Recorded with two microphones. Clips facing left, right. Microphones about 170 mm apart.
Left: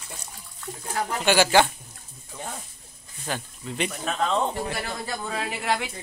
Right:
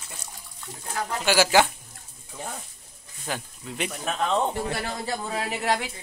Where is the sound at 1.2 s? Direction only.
5° right (ahead or behind).